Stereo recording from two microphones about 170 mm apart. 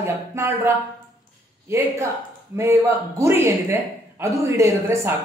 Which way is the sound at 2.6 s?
15° right (ahead or behind).